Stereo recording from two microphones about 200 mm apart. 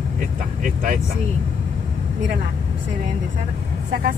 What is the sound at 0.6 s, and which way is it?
Speech, 45° right (ahead or behind).